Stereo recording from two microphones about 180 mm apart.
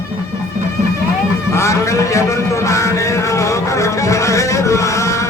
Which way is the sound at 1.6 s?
15° left (ahead or behind).